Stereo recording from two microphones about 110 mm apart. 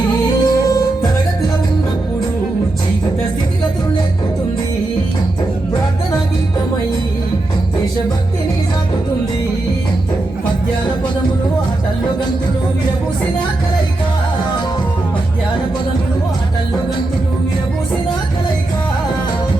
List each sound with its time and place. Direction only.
0.4 s music: 35° left (ahead or behind)